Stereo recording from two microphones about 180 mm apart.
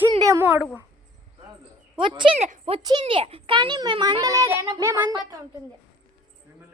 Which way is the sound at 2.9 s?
25° right (ahead or behind).